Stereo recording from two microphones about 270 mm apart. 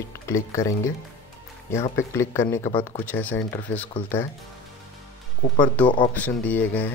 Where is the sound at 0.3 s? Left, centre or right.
Centre.